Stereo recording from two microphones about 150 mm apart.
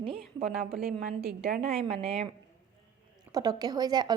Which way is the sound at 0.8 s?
80° right.